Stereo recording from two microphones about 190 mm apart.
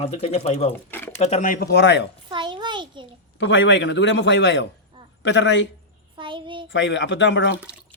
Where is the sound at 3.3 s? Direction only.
75° left (ahead or behind).